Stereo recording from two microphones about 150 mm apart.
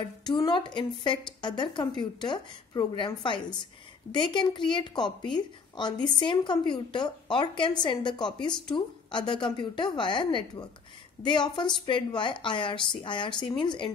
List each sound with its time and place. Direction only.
0.2 s a woman's voice: 30° left (ahead or behind)